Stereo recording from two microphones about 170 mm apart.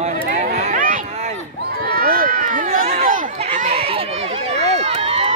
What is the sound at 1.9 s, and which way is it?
Run, 60° right (ahead or behind).